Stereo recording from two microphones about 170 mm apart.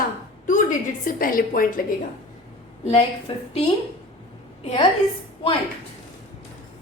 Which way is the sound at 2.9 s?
35° left (ahead or behind).